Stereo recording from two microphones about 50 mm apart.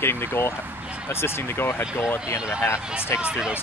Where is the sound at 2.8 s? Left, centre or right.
Centre.